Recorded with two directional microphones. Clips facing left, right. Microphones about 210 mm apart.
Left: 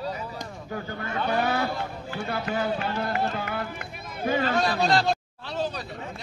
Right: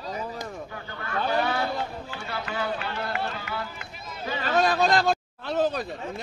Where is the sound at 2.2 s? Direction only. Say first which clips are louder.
Left 4 dB; 50° left (ahead or behind).